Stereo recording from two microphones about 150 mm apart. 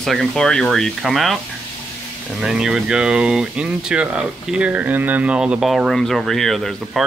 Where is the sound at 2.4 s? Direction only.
5° right (ahead or behind).